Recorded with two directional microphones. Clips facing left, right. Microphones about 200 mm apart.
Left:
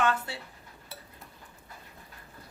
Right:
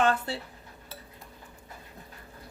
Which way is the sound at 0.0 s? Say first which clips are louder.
Right 3 dB; 40° right (ahead or behind).